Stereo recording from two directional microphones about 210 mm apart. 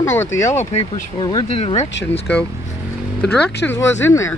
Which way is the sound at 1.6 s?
30° left (ahead or behind).